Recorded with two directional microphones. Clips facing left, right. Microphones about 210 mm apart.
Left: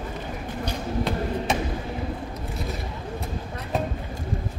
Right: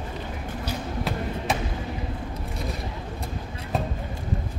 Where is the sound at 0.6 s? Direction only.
5° right (ahead or behind).